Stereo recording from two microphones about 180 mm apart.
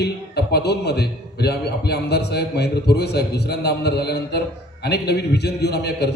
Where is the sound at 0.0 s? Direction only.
65° left (ahead or behind).